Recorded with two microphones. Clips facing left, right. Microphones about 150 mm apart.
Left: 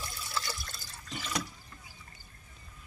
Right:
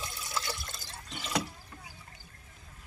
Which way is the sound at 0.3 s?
20° right (ahead or behind).